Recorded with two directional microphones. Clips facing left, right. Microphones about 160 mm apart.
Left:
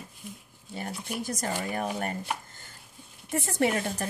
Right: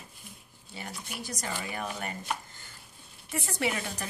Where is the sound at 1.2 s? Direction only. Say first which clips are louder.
Left 5 dB; 50° left (ahead or behind).